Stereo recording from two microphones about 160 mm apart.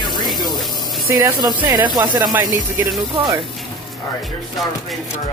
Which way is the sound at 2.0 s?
25° right (ahead or behind).